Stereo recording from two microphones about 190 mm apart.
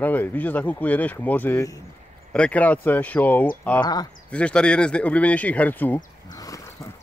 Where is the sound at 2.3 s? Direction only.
5° left (ahead or behind).